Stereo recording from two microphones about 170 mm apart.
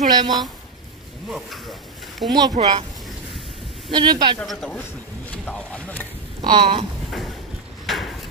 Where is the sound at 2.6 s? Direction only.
40° right (ahead or behind).